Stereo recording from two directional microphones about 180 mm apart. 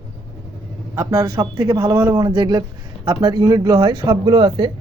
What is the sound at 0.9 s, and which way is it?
Speech, 15° right (ahead or behind).